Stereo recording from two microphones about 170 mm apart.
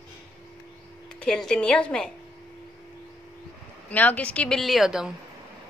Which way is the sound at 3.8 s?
10° left (ahead or behind).